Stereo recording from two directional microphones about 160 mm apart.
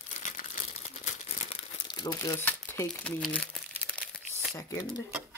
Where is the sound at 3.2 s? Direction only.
Centre (ahead or behind).